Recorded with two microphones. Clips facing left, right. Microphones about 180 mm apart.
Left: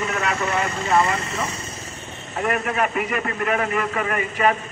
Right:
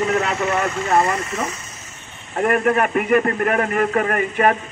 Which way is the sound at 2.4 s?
50° right (ahead or behind).